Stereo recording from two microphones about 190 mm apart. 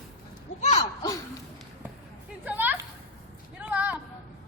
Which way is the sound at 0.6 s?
35° left (ahead or behind).